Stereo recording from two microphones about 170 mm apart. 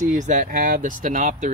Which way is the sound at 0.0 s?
50° right (ahead or behind).